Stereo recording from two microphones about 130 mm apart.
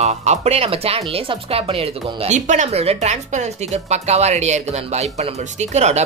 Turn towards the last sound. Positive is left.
turn(degrees=-60)  # may be behind; listen again after turning